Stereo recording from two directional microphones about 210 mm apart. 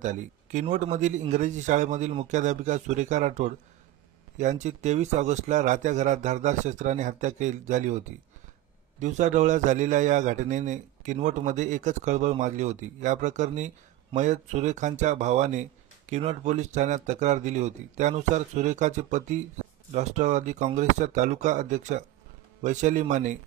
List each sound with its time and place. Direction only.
0.0 s speech: 35° right (ahead or behind)
9.0 s speech: 35° right (ahead or behind)